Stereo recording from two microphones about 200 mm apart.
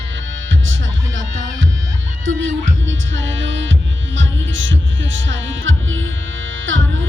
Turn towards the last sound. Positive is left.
turn(degrees=-75)  # may be behind; listen again after turning